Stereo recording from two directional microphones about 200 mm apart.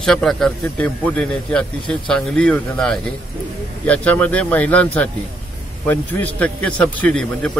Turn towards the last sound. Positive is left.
turn(degrees=5)  # may be behind; listen again after turning